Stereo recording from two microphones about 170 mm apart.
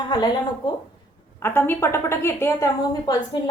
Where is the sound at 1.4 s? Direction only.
15° left (ahead or behind).